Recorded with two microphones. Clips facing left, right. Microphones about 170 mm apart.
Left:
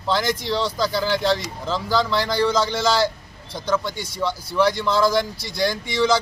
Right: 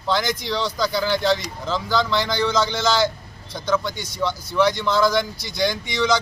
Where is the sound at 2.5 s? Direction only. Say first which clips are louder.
Even; 30° left (ahead or behind).